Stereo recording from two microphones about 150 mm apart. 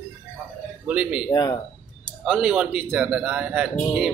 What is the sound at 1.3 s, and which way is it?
Speech, 25° left (ahead or behind).